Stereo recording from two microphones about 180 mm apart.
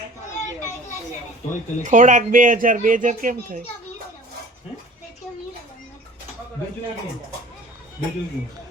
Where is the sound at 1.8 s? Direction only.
45° right (ahead or behind).